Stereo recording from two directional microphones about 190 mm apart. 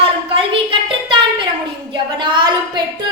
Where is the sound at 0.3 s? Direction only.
25° right (ahead or behind).